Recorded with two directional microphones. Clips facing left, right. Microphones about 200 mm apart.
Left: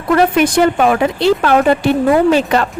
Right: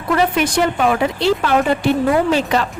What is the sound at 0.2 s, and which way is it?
A woman's voice, 50° left (ahead or behind).